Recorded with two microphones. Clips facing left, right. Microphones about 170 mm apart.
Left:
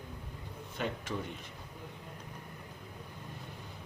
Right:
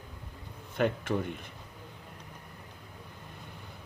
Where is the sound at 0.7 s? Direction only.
55° right (ahead or behind).